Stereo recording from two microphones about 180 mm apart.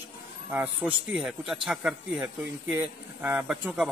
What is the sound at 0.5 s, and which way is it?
A man's voice, 10° right (ahead or behind).